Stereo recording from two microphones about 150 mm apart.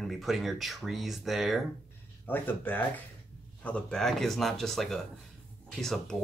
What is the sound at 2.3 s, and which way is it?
Speech, 15° left (ahead or behind).